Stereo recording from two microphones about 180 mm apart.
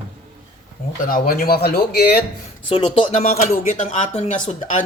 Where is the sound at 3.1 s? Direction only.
40° left (ahead or behind).